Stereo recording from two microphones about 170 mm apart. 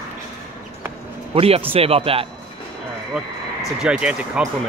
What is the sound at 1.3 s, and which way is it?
Speech, 35° right (ahead or behind).